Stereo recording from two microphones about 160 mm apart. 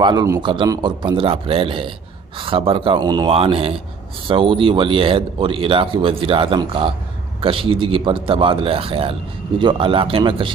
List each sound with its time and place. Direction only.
0.0 s speech: 25° right (ahead or behind)